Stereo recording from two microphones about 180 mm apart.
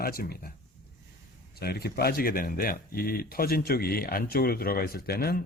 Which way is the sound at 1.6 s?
60° left (ahead or behind).